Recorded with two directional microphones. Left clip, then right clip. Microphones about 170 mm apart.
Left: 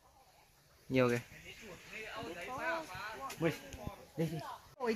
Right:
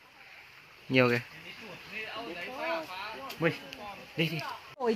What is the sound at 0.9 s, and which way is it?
Speech, 5° right (ahead or behind).